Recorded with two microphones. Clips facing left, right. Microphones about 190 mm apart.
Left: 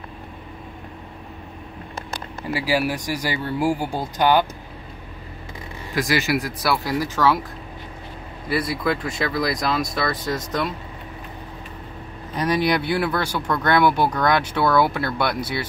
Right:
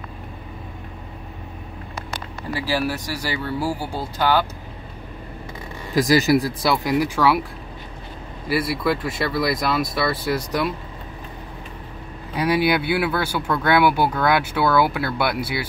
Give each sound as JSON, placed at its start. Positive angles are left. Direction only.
{"t": 2.5, "sound": "speech", "side_deg": 10}
{"t": 5.9, "sound": "speech", "side_deg": -40}
{"t": 6.6, "sound": "speech", "side_deg": -20}
{"t": 8.5, "sound": "speech", "side_deg": -5}
{"t": 12.4, "sound": "speech", "side_deg": -5}